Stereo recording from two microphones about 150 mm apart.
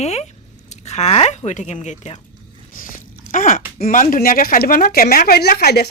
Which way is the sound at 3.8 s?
65° left (ahead or behind).